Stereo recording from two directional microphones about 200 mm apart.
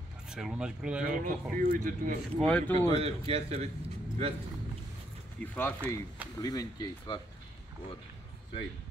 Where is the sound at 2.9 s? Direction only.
30° right (ahead or behind).